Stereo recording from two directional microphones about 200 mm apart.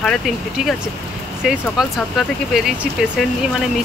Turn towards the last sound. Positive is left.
turn(degrees=-5)  # may be behind; listen again after turning